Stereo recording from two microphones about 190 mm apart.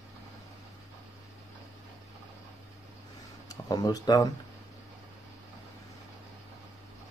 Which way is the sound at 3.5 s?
20° left (ahead or behind).